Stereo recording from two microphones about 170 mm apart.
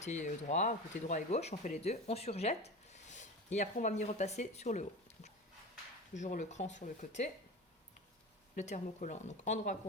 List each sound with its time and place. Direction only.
0.0 s speech: 45° left (ahead or behind)
8.5 s speech: 45° left (ahead or behind)